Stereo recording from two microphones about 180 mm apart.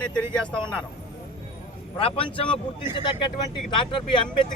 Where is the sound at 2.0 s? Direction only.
30° left (ahead or behind).